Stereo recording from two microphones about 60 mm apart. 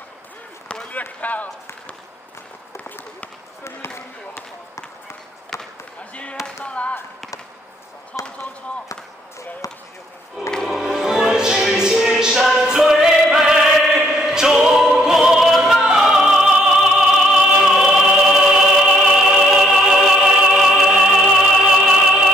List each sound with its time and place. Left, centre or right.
0.7 s basketball bounce: left
1.0 s speech: left
3.6 s basketball bounce: left
5.5 s basketball bounce: centre
6.4 s basketball bounce: centre
8.2 s basketball bounce: left
9.6 s speech: left
10.4 s music: centre
12.4 s choir: centre
17.6 s music: centre
20.8 s opera: centre